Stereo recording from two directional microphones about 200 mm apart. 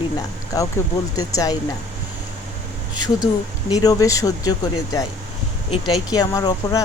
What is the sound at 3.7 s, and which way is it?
Speech, 15° left (ahead or behind).